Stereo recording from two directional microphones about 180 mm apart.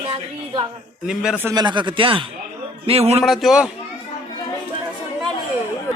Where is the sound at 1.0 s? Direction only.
5° right (ahead or behind).